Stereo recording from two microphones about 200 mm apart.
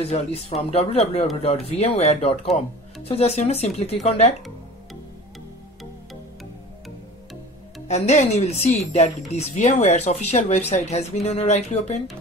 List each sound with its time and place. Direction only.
0.0 s speech: 30° left (ahead or behind)
7.9 s speech: 35° left (ahead or behind)